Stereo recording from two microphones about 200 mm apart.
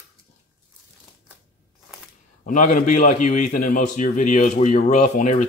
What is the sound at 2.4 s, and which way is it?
A man's voice, 40° left (ahead or behind).